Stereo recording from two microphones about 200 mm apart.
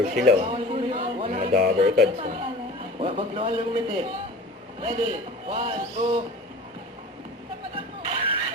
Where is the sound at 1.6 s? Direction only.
45° right (ahead or behind).